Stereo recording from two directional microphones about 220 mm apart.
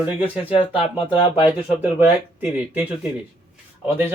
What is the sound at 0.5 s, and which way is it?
Speech, 25° left (ahead or behind).